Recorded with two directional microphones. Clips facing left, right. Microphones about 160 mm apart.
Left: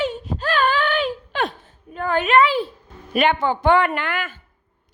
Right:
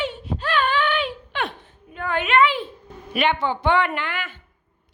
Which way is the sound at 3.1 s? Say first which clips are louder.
Left 3 dB; 45° left (ahead or behind).